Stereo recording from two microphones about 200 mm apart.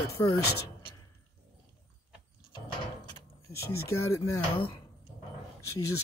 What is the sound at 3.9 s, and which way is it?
Speech, 15° left (ahead or behind).